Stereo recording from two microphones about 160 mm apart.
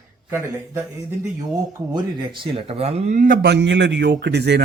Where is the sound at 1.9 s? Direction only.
30° right (ahead or behind); by 3.3 s 55° right (ahead or behind).